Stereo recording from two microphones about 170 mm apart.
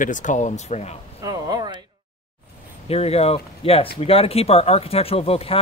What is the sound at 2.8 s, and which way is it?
Speech, 35° left (ahead or behind).